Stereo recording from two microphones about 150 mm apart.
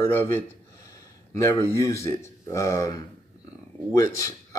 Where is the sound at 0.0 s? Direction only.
15° left (ahead or behind).